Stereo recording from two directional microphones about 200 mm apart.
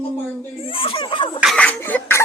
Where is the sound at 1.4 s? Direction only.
Centre (ahead or behind).